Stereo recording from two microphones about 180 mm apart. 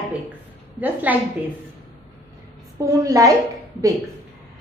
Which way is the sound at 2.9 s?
20° right (ahead or behind).